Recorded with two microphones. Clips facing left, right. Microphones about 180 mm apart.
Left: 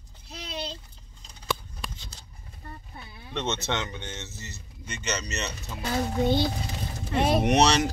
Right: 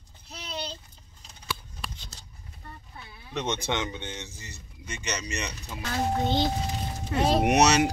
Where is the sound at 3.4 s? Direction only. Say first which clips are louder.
Even; 15° right (ahead or behind).